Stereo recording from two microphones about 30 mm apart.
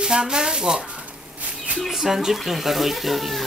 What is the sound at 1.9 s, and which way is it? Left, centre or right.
A woman's voice, centre.